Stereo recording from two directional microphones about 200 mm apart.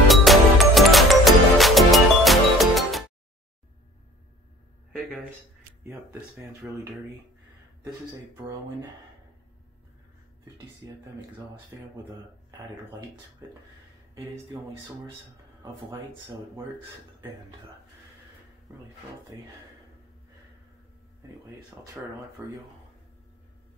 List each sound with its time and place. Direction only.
0.1 s music: centre (ahead or behind)
5.9 s speech: 15° right (ahead or behind)
10.8 s speech: 15° right (ahead or behind)
22.0 s speech: centre (ahead or behind)